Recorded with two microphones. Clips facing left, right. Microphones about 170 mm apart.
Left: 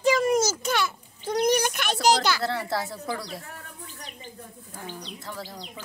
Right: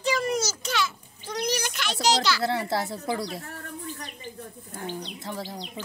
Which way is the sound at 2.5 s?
20° right (ahead or behind).